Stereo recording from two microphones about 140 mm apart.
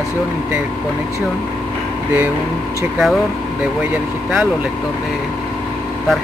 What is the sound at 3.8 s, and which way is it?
Speech, 5° right (ahead or behind).